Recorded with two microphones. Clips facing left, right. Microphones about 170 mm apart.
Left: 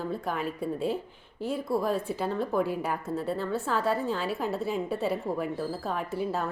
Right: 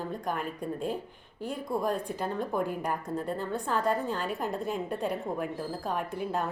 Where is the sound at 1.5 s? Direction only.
5° left (ahead or behind).